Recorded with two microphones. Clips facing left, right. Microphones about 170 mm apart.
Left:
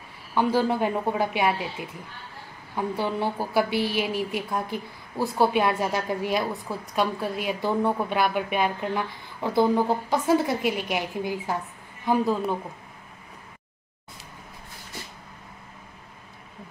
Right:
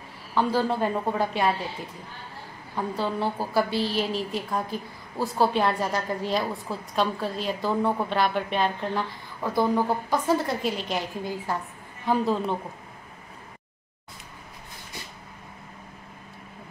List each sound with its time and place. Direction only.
0.3 s a woman's voice: 15° left (ahead or behind)
9.4 s speech: 20° left (ahead or behind)
10.2 s a woman's voice: 10° left (ahead or behind)